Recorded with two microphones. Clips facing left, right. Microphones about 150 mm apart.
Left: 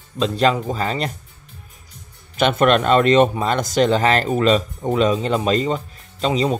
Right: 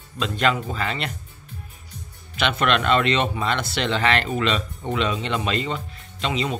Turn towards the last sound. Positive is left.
turn(degrees=40)  # may be behind; listen again after turning